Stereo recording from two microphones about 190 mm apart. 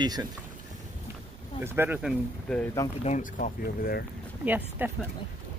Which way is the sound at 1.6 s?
10° right (ahead or behind).